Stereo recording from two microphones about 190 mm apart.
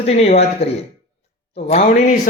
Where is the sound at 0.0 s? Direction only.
35° left (ahead or behind).